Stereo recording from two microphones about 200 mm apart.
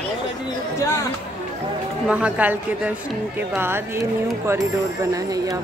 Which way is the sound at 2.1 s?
5° right (ahead or behind).